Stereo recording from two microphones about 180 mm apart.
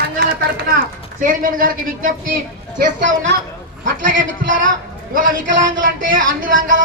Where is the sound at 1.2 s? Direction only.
50° right (ahead or behind).